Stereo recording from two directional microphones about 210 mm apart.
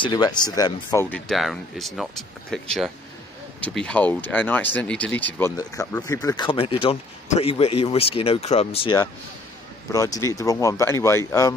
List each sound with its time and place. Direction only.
0.0 s speech: 20° left (ahead or behind)
1.1 s speech: centre (ahead or behind); by 8.9 s 30° left (ahead or behind)
9.9 s speech: 15° left (ahead or behind)